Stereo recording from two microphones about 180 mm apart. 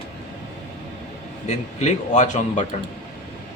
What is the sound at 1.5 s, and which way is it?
Speech, 40° left (ahead or behind).